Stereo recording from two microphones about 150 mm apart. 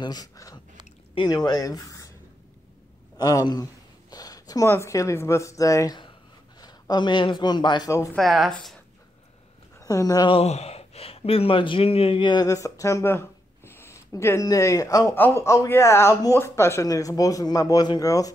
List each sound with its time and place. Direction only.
0.0 s speech: 25° left (ahead or behind)
3.2 s a man's voice: 25° left (ahead or behind)
8.1 s speech: centre (ahead or behind)
9.8 s speech: 20° left (ahead or behind)
10.3 s speech: 45° left (ahead or behind); by 18.3 s 25° left (ahead or behind)